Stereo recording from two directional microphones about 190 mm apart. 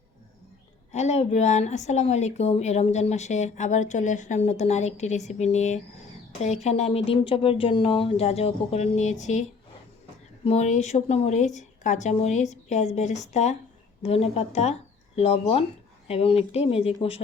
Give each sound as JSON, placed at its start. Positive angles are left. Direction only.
{"t": 0.9, "sound": "a woman's voice", "side_deg": 35}
{"t": 10.4, "sound": "a woman's voice", "side_deg": 35}